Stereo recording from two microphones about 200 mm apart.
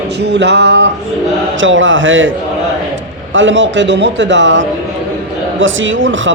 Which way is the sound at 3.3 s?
70° right (ahead or behind).